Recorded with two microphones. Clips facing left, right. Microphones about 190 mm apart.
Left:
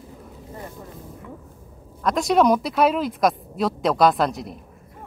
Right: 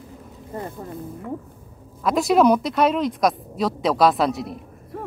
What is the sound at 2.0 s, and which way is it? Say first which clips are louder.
Speech: right 2 dB; centre (ahead or behind).